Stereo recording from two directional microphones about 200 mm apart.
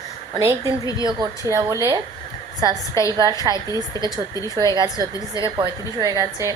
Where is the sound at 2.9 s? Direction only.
15° left (ahead or behind).